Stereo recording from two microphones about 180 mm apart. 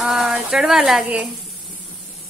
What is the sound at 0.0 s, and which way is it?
Speech, centre (ahead or behind).